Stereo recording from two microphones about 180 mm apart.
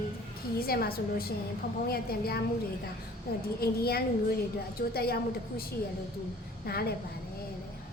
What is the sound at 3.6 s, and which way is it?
A woman's voice, 60° left (ahead or behind).